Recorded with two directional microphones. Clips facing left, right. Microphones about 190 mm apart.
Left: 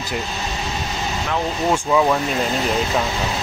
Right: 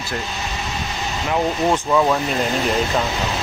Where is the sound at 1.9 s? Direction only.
5° left (ahead or behind).